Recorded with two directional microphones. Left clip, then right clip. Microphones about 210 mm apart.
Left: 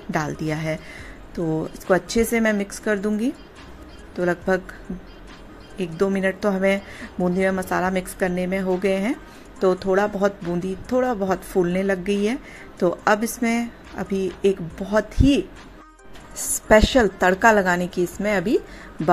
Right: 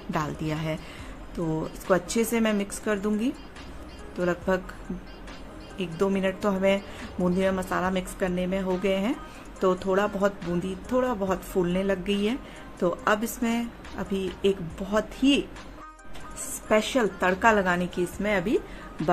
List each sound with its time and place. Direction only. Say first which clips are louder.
0.1 s a woman's voice: left 5 dB; 15° left (ahead or behind)
5.8 s a woman's voice: left 4 dB; 15° left (ahead or behind)
16.6 s a woman's voice: left 8 dB; 30° left (ahead or behind)